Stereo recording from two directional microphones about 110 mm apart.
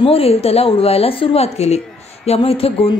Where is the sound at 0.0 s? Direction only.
60° left (ahead or behind).